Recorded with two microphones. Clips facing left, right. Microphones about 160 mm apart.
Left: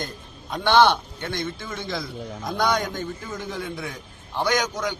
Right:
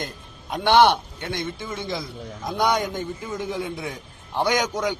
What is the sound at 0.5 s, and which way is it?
A man's voice, 15° right (ahead or behind).